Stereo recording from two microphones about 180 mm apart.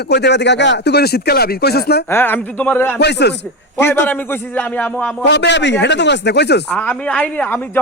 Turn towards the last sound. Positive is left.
turn(degrees=10)  # may be behind; listen again after turning